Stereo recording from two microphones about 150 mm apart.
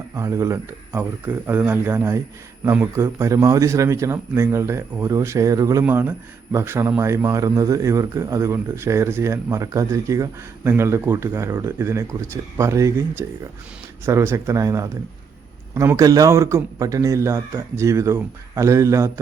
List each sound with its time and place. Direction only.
0.2 s a man's voice: 20° right (ahead or behind)